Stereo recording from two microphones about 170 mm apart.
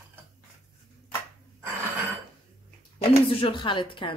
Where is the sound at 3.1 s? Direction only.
30° left (ahead or behind).